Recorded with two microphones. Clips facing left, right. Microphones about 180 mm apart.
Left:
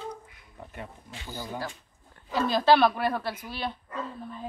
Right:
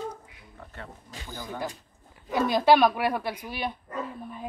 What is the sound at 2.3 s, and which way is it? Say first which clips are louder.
Speech: right 1 dB; 15° right (ahead or behind).